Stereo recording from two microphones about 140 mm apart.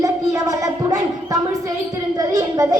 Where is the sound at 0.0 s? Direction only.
25° right (ahead or behind).